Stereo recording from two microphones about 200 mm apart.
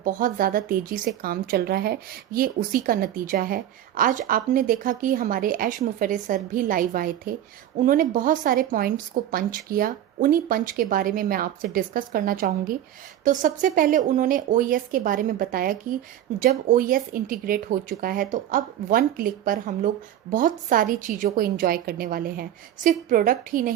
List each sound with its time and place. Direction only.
0.0 s speech: 45° right (ahead or behind)